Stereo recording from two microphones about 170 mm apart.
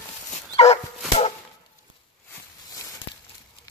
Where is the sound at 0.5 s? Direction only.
35° left (ahead or behind).